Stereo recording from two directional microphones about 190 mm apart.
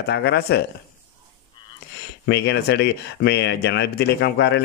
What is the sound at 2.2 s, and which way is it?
Speech, 65° left (ahead or behind).